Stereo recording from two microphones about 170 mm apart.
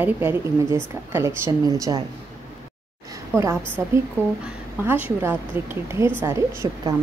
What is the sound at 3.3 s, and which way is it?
Speech, 15° right (ahead or behind).